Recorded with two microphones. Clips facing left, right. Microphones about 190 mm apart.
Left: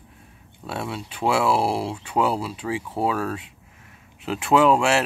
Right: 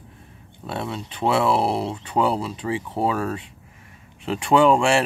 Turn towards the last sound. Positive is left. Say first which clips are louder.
# right 1 dB
turn(degrees=5)  # may be behind; listen again after turning